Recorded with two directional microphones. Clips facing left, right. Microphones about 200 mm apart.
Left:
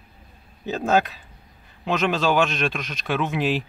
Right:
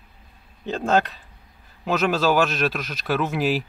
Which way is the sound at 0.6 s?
5° left (ahead or behind).